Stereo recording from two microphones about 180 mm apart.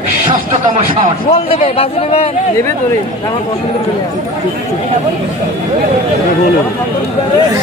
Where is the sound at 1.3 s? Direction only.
35° left (ahead or behind).